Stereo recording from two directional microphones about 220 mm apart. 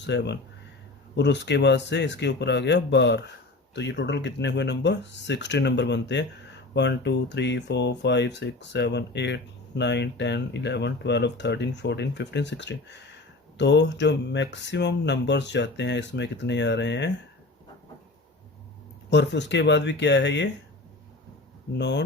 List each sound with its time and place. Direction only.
0.0 s speech: 50° left (ahead or behind)
19.1 s speech: 50° left (ahead or behind)
21.8 s speech: 50° left (ahead or behind)